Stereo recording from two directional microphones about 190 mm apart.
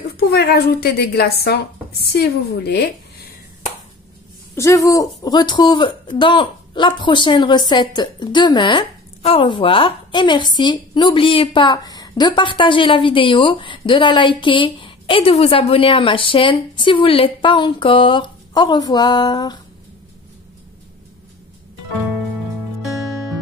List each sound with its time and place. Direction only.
0.2 s a woman's voice: 55° left (ahead or behind)
4.6 s speech: 15° left (ahead or behind)